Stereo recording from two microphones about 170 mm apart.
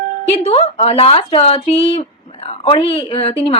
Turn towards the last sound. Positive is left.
turn(degrees=35)  # may be behind; listen again after turning